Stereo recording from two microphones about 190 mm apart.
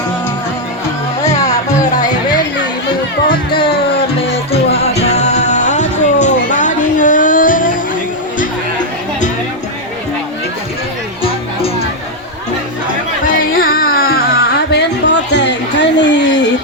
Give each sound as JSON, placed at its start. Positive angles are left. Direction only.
{"t": 1.8, "sound": "music", "side_deg": 20}
{"t": 3.5, "sound": "music", "side_deg": 25}
{"t": 13.2, "sound": "music", "side_deg": 50}